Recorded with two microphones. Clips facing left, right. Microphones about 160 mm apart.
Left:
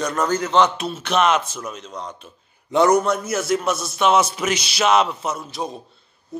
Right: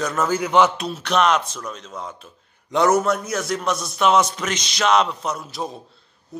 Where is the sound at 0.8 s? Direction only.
Centre (ahead or behind).